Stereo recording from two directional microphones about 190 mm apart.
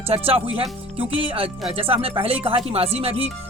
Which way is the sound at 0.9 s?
5° right (ahead or behind).